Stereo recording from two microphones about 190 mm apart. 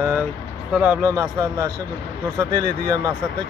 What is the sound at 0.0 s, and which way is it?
Speech, 10° right (ahead or behind).